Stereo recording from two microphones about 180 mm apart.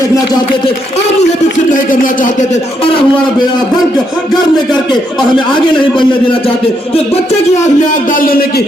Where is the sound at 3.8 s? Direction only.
Centre (ahead or behind).